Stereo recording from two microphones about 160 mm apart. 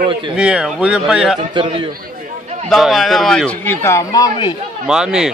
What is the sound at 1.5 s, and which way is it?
Speech, 30° right (ahead or behind).